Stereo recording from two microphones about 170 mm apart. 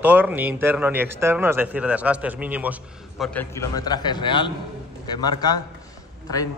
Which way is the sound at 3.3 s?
20° left (ahead or behind).